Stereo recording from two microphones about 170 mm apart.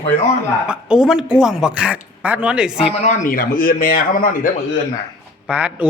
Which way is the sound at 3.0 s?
50° left (ahead or behind).